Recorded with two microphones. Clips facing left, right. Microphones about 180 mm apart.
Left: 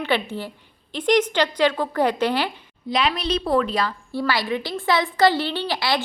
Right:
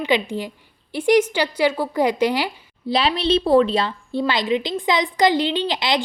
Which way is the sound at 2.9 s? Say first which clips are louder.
Right 3 dB; 30° right (ahead or behind).